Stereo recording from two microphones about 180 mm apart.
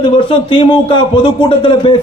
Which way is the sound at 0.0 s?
30° left (ahead or behind).